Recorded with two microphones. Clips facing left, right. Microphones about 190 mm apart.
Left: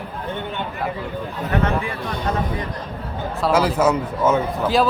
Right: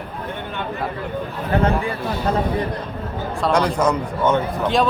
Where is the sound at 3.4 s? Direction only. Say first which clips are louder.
Left 1 dB; 5° left (ahead or behind).